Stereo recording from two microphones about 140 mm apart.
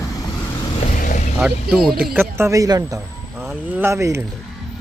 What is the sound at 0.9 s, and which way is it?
Vehicle, 70° left (ahead or behind).